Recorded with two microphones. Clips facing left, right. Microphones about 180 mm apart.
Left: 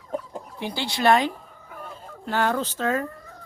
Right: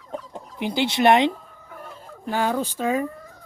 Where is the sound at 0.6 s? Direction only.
20° right (ahead or behind).